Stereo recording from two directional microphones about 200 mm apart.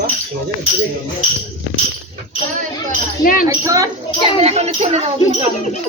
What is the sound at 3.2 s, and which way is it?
Speech, 45° left (ahead or behind).